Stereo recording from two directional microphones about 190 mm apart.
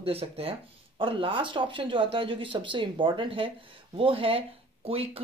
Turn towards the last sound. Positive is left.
turn(degrees=-30)  # may be behind; listen again after turning